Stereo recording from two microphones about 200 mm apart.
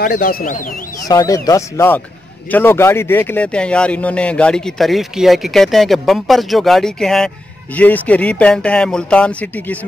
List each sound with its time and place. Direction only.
0.0 s speech: 45° left (ahead or behind)
1.0 s speech: 15° left (ahead or behind)